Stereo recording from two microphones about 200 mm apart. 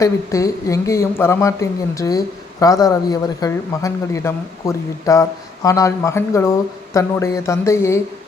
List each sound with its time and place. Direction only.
0.0 s speech: 15° left (ahead or behind)